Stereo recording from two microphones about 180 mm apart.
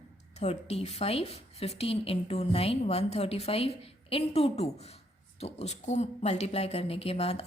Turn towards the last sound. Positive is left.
turn(degrees=35)  # may be behind; listen again after turning